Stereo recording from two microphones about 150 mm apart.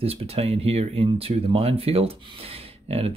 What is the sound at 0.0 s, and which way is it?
Speech, 40° right (ahead or behind).